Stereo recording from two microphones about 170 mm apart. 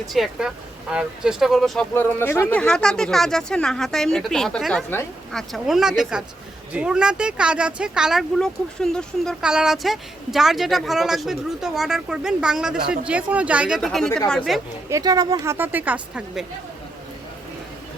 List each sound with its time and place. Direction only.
0.1 s speech: centre (ahead or behind)
14.8 s speech: 20° right (ahead or behind)
15.5 s a woman's voice: 10° right (ahead or behind)